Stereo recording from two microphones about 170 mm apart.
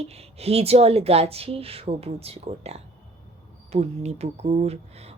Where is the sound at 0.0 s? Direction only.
35° right (ahead or behind).